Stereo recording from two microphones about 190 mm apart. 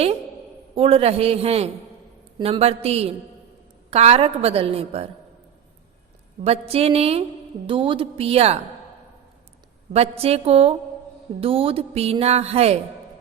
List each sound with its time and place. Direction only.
0.8 s a woman's voice: 30° right (ahead or behind)
6.4 s a woman's voice: 30° right (ahead or behind)
9.9 s a woman's voice: 35° right (ahead or behind)